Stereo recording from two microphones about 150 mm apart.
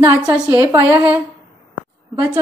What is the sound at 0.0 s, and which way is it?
A woman's voice, 20° right (ahead or behind).